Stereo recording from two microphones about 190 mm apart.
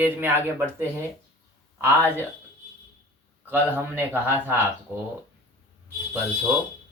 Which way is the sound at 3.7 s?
10° right (ahead or behind).